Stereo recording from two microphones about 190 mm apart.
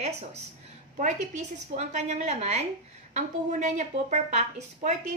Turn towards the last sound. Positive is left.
turn(degrees=-40)  # may be behind; listen again after turning